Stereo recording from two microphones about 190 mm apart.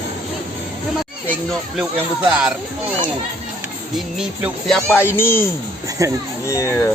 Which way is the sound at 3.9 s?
Centre (ahead or behind).